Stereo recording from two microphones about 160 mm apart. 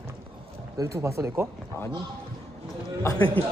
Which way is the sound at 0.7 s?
20° right (ahead or behind).